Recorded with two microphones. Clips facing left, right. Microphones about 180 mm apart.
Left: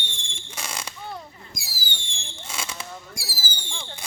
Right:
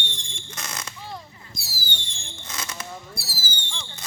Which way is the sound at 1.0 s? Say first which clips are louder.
Left 1 dB; 60° left (ahead or behind).